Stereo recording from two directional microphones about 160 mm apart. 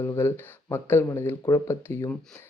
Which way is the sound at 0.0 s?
15° left (ahead or behind).